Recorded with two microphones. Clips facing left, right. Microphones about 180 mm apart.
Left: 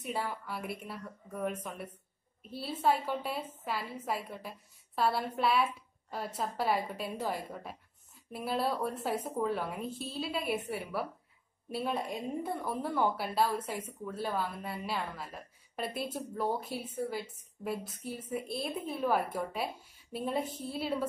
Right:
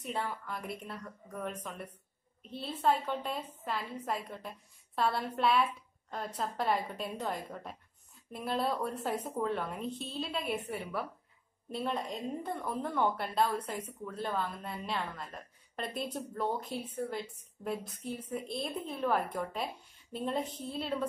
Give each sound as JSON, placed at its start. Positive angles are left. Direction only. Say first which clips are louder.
{"t": 0.0, "sound": "a woman's voice", "louder": "left 1 dB", "side_deg": 5}